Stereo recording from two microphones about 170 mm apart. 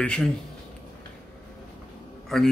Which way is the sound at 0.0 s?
5° left (ahead or behind).